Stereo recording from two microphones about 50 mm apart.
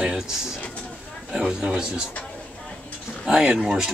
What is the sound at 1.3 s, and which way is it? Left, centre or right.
Speech, centre.